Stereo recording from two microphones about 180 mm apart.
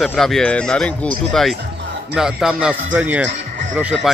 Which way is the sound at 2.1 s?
5° right (ahead or behind).